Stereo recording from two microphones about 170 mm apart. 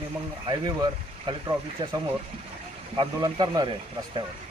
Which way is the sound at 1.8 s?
25° right (ahead or behind).